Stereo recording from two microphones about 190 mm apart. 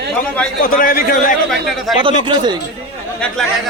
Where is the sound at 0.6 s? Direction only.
50° left (ahead or behind).